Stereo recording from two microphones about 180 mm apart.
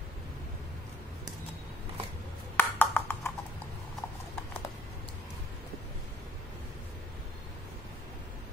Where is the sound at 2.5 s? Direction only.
10° left (ahead or behind).